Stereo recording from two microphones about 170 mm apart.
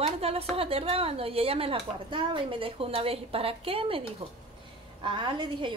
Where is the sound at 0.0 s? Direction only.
35° right (ahead or behind).